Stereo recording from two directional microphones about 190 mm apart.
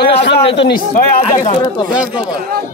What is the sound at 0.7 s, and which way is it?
Speech, 50° left (ahead or behind).